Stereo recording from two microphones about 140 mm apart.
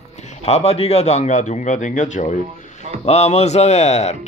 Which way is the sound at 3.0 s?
50° left (ahead or behind).